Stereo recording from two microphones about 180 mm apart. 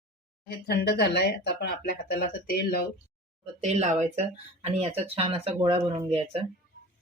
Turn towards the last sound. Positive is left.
turn(degrees=-30)  # may be behind; listen again after turning